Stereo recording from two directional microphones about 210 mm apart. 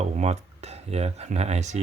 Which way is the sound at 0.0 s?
30° right (ahead or behind).